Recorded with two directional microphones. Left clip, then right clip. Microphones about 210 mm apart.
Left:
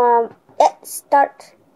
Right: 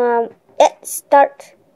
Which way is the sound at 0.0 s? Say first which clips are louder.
Left 2 dB; 35° right (ahead or behind).